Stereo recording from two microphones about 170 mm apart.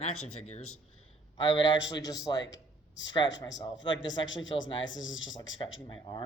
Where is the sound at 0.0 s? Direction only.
40° left (ahead or behind).